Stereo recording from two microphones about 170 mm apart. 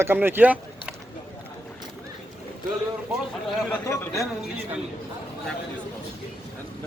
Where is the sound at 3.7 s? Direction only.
15° left (ahead or behind).